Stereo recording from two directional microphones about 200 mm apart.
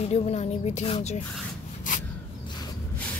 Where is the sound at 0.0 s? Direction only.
30° left (ahead or behind).